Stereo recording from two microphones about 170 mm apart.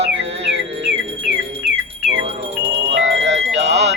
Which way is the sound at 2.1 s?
35° right (ahead or behind).